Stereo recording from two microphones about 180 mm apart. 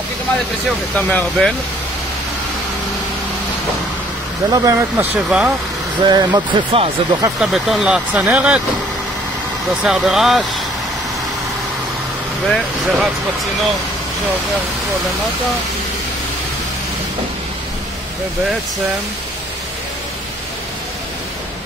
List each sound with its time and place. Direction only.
0.9 s speech: 5° left (ahead or behind)
4.5 s speech: 15° right (ahead or behind)
6.0 s speech: 25° right (ahead or behind)
7.3 s speech: centre (ahead or behind)
9.8 s speech: centre (ahead or behind)
12.4 s speech: centre (ahead or behind)